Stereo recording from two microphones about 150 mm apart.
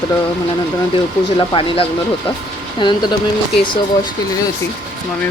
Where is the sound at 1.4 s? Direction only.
40° left (ahead or behind).